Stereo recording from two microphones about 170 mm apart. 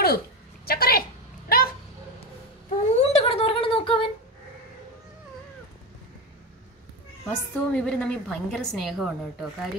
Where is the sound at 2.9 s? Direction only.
35° left (ahead or behind).